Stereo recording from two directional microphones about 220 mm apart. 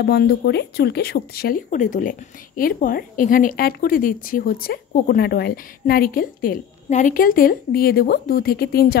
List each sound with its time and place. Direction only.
0.0 s speech: 50° left (ahead or behind)